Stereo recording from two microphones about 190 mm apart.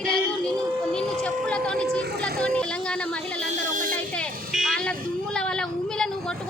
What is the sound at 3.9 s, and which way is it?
Vehicle, 5° left (ahead or behind).